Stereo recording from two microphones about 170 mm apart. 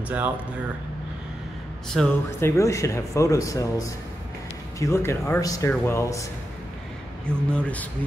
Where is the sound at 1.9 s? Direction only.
Centre (ahead or behind).